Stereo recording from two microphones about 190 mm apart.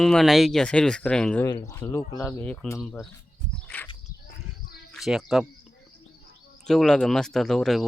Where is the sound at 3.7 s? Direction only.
10° left (ahead or behind).